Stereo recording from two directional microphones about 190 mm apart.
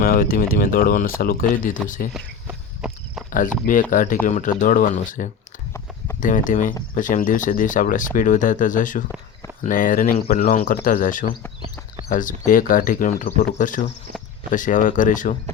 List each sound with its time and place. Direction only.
0.0 s speech: 50° left (ahead or behind)
2.1 s walk: 5° right (ahead or behind)
3.3 s speech: 45° left (ahead or behind)